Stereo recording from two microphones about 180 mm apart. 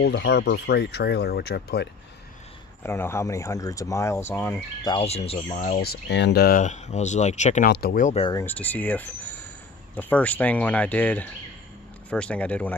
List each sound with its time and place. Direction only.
0.0 s speech: 70° left (ahead or behind)
2.8 s speech: 15° left (ahead or behind)
4.8 s speech: 30° left (ahead or behind)
5.6 s speech: 55° left (ahead or behind)
7.6 s speech: 60° left (ahead or behind)
8.5 s speech: 10° left (ahead or behind)